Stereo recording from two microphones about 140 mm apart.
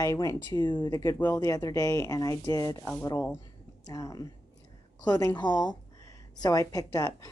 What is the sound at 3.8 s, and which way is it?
Speech, 25° left (ahead or behind).